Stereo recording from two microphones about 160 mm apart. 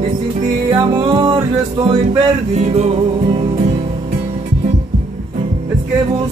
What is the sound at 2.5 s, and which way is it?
Music, 45° right (ahead or behind).